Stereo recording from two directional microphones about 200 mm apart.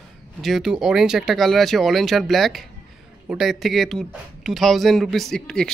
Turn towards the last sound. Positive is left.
turn(degrees=5)  # may be behind; listen again after turning